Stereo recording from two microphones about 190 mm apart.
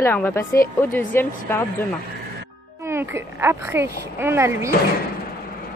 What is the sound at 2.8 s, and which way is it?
A woman's voice, 15° right (ahead or behind).